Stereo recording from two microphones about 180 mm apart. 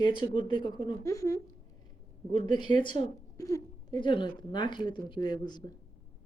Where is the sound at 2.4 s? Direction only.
25° left (ahead or behind).